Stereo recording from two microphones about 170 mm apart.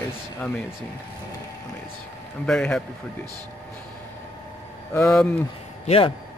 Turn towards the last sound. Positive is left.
turn(degrees=35)  # may be behind; listen again after turning